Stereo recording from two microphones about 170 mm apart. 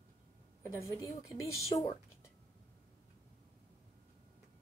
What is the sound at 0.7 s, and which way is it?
Speech, 20° left (ahead or behind).